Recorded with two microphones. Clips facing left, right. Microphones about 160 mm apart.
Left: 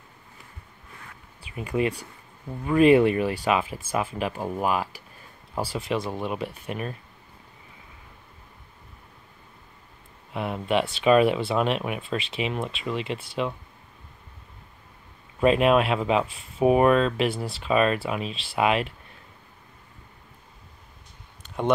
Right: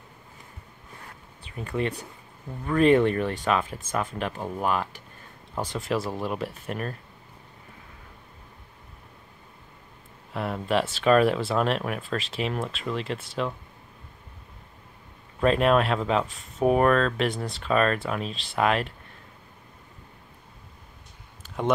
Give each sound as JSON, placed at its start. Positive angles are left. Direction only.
{"t": 1.4, "sound": "speech", "side_deg": 10}
{"t": 10.3, "sound": "speech", "side_deg": 0}
{"t": 15.4, "sound": "speech", "side_deg": 5}
{"t": 21.4, "sound": "a sound", "side_deg": 0}